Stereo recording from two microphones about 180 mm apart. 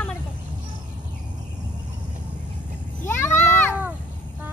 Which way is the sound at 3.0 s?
15° left (ahead or behind).